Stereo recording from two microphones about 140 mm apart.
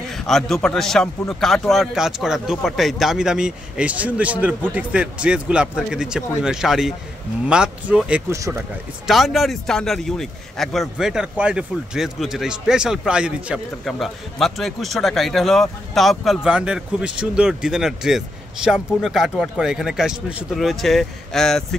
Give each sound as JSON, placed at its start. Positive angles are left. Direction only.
{"t": 0.1, "sound": "a man's voice", "side_deg": 5}
{"t": 8.3, "sound": "speech", "side_deg": -20}
{"t": 9.0, "sound": "a man's voice", "side_deg": 0}